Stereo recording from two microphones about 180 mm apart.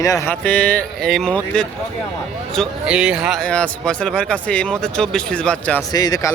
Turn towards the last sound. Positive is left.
turn(degrees=20)  # may be behind; listen again after turning